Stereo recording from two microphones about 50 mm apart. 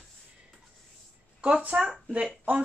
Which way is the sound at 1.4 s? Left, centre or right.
Right.